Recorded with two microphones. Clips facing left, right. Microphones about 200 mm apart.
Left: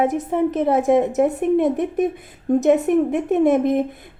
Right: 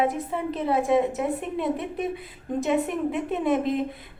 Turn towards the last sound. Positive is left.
turn(degrees=45)  # may be behind; listen again after turning